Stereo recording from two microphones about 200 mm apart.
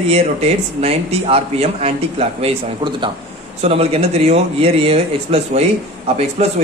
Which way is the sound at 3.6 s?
30° right (ahead or behind).